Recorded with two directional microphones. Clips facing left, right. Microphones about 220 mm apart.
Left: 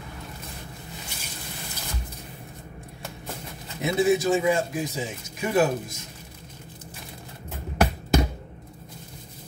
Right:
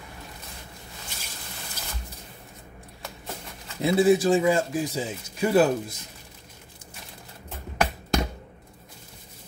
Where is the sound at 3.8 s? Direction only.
30° right (ahead or behind).